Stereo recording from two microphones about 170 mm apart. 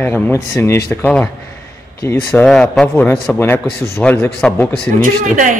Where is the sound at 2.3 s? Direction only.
5° left (ahead or behind).